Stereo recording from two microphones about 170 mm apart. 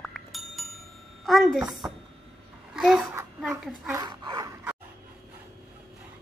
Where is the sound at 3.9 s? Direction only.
25° right (ahead or behind).